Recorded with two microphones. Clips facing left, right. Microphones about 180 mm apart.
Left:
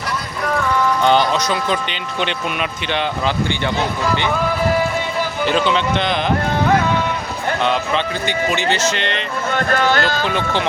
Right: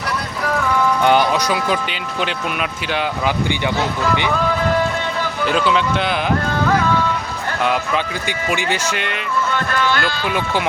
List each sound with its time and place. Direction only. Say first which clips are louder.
1.0 s speech: even; 10° right (ahead or behind)
5.5 s speech: even; 5° right (ahead or behind)
7.6 s speech: right 1 dB; 10° right (ahead or behind)
9.5 s speech: left 5 dB; 45° left (ahead or behind)
10.2 s speech: even; 10° right (ahead or behind)